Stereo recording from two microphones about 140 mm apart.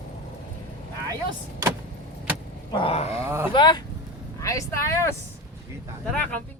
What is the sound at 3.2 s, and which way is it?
Speech, 20° right (ahead or behind).